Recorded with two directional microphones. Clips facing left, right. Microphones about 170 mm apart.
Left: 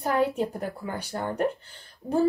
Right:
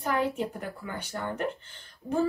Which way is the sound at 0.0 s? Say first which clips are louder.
Left 4 dB; 40° left (ahead or behind).